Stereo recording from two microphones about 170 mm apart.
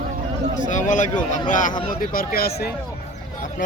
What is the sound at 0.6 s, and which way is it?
Speech, 45° left (ahead or behind).